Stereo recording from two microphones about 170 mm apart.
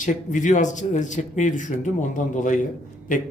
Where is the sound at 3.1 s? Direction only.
50° left (ahead or behind).